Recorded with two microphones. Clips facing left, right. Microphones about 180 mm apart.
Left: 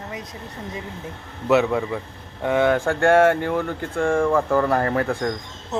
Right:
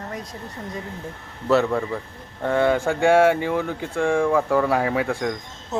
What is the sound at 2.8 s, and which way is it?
Speech, 10° right (ahead or behind).